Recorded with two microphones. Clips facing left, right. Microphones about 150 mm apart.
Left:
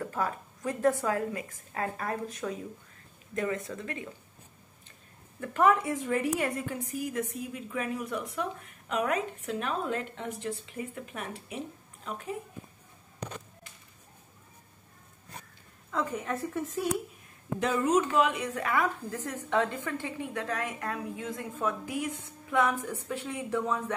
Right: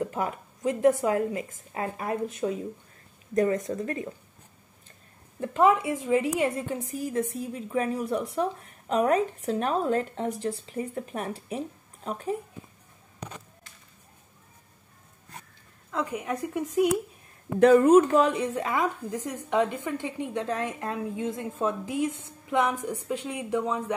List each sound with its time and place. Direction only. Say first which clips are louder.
0.0 s a woman's voice: right 3 dB; 20° right (ahead or behind)
3.3 s a woman's voice: right 8 dB; 35° right (ahead or behind)
5.4 s a woman's voice: right 3 dB; 20° right (ahead or behind); by 12.4 s 40° right (ahead or behind)
15.9 s a woman's voice: right 2 dB; 10° right (ahead or behind)
17.6 s speech: right 10 dB; 60° right (ahead or behind)
18.1 s a woman's voice: right 4 dB; 35° right (ahead or behind); by 23.8 s 15° right (ahead or behind)